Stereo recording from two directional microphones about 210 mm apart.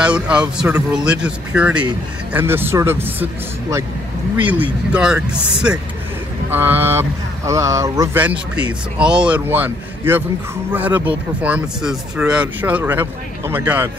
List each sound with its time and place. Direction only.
0.0 s speech: 5° right (ahead or behind)
4.4 s speech: 5° right (ahead or behind)
6.5 s speech: 10° right (ahead or behind)